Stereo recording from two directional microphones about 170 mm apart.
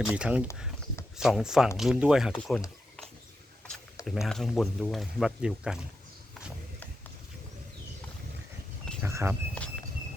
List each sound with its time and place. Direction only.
0.0 s speech: 5° right (ahead or behind)
4.0 s speech: centre (ahead or behind)
9.0 s a sound: 15° right (ahead or behind)